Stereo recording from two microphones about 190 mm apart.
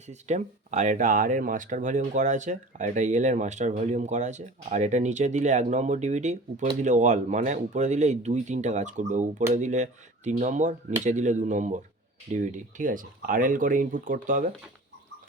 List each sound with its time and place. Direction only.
0.1 s speech: 40° right (ahead or behind)